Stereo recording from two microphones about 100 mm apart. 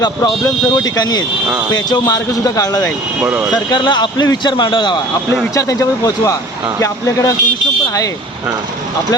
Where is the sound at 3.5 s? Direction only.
50° left (ahead or behind).